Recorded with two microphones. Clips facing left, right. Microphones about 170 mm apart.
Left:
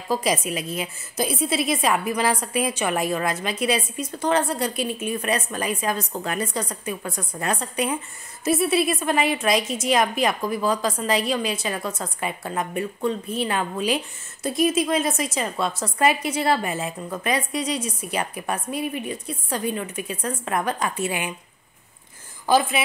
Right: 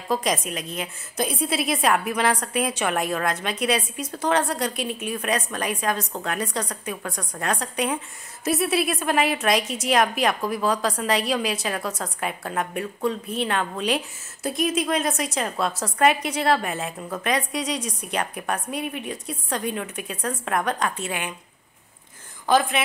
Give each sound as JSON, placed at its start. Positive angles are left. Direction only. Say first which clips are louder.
{"t": 0.1, "sound": "a woman's voice", "louder": "left 1 dB", "side_deg": 5}
{"t": 22.5, "sound": "a woman's voice", "louder": "left 1 dB", "side_deg": 5}